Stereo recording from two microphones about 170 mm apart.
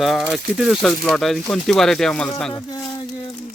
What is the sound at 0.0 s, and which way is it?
Speech, 5° right (ahead or behind).